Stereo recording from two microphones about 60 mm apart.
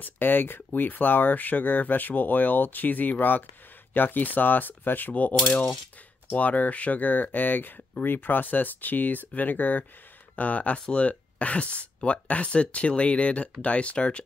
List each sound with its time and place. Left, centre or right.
0.0 s speech: left
6.3 s speech: left